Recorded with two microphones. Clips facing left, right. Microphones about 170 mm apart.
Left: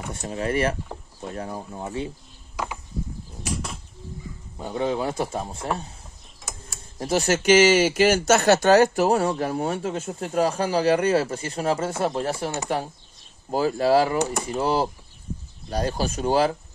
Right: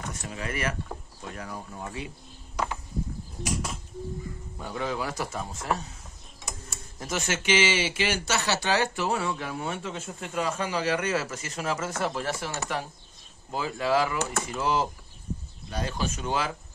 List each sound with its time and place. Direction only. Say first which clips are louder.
0.1 s speech: left 12 dB; 30° left (ahead or behind)
2.5 s a sound: even; 5° left (ahead or behind)
4.6 s speech: left 6 dB; 25° left (ahead or behind)
7.0 s speech: left 9 dB; 35° left (ahead or behind)
13.5 s speech: left 7 dB; 40° left (ahead or behind)